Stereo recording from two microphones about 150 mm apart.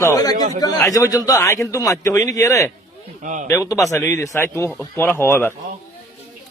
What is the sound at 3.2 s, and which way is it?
Speech, 55° right (ahead or behind).